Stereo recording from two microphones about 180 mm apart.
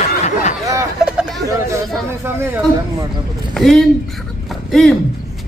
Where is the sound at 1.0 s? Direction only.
5° right (ahead or behind).